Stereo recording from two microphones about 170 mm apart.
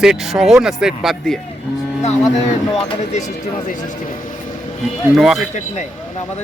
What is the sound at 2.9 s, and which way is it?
Speech, 40° left (ahead or behind).